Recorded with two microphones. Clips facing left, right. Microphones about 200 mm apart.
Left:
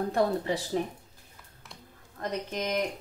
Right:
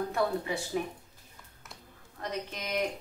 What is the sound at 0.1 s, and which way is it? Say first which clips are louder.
Speech: left 3 dB; 35° left (ahead or behind).